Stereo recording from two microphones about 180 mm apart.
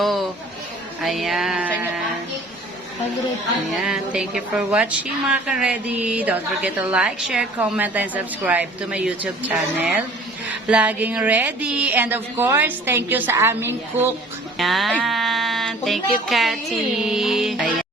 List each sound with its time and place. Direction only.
0.0 s chatter: centre (ahead or behind)
1.0 s speech: centre (ahead or behind)
3.7 s a woman's voice: 5° right (ahead or behind)
14.6 s speech: centre (ahead or behind)